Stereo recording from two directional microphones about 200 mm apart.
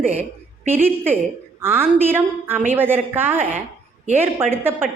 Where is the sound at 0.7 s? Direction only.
10° right (ahead or behind).